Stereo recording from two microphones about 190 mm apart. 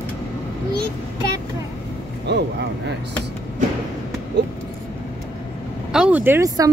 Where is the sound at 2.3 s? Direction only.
60° right (ahead or behind).